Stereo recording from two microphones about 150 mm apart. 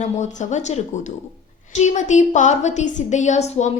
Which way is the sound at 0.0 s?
50° left (ahead or behind).